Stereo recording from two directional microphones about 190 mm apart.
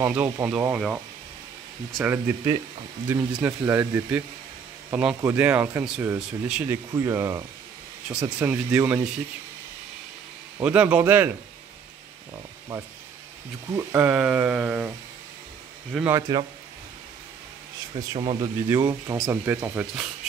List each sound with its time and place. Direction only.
0.0 s speech: 10° right (ahead or behind)
5.2 s speech: 10° right (ahead or behind)
8.5 s speech: 10° right (ahead or behind)
10.6 s speech: 5° right (ahead or behind)
13.7 s speech: 10° right (ahead or behind)
15.9 s speech: 5° right (ahead or behind)
16.2 s speech: 20° right (ahead or behind)
17.9 s speech: 25° right (ahead or behind); by 20.1 s 5° right (ahead or behind)